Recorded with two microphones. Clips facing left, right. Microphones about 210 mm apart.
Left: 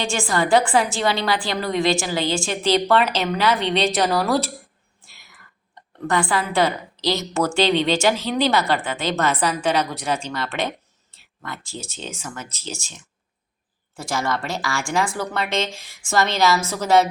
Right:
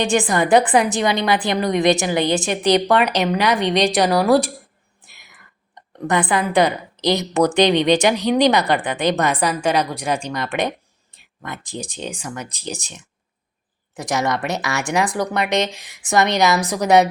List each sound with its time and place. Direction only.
0.0 s a woman's voice: 20° right (ahead or behind)
5.0 s a sound: 20° right (ahead or behind)
6.1 s a woman's voice: 20° right (ahead or behind)